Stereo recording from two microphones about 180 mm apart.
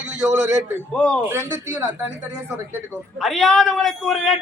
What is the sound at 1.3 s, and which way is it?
A man's voice, 15° right (ahead or behind).